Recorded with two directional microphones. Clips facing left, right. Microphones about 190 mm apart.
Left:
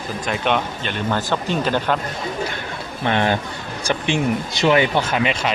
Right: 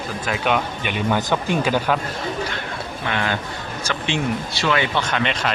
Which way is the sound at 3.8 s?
15° left (ahead or behind).